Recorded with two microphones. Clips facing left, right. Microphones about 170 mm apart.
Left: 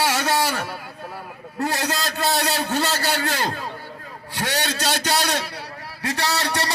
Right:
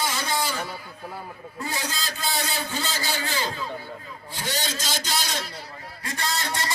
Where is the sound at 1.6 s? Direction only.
70° left (ahead or behind).